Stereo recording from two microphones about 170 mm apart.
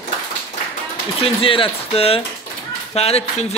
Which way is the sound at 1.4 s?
30° left (ahead or behind).